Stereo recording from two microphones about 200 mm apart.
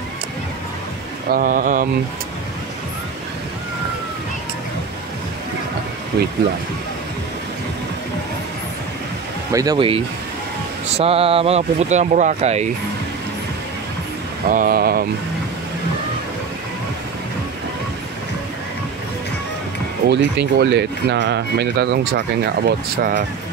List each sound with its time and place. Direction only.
1.3 s speech: 45° right (ahead or behind)
6.1 s speech: 50° right (ahead or behind)
9.5 s speech: 15° right (ahead or behind); by 12.6 s 35° right (ahead or behind)
14.5 s speech: 45° right (ahead or behind)
20.1 s speech: 60° right (ahead or behind)